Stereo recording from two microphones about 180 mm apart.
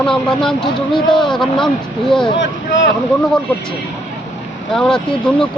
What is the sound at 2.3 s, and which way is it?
Speech, 90° left.